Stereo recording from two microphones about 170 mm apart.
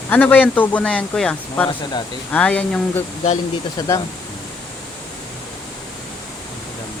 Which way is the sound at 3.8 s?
20° left (ahead or behind).